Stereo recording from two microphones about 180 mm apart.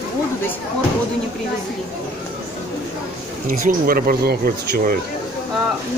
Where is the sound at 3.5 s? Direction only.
50° right (ahead or behind).